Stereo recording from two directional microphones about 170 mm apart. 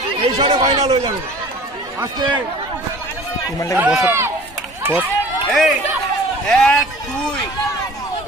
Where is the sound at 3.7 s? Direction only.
5° right (ahead or behind).